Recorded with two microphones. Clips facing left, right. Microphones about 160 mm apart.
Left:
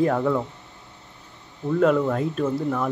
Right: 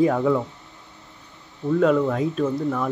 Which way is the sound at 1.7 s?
Centre (ahead or behind).